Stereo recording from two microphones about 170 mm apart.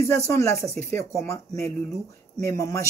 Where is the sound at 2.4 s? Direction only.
20° left (ahead or behind).